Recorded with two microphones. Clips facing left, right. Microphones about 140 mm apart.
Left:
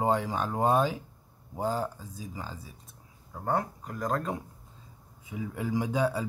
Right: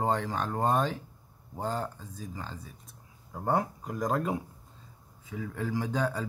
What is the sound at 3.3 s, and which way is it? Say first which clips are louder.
Speech: right 1 dB; 10° right (ahead or behind).